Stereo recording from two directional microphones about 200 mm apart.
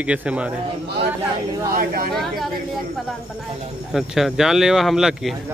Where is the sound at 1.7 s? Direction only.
45° right (ahead or behind).